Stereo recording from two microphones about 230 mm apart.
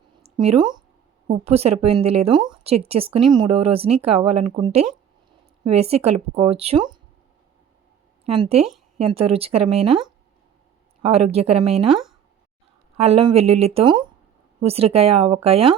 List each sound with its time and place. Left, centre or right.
0.2 s speech: right
8.2 s speech: right
11.0 s speech: right
13.0 s speech: right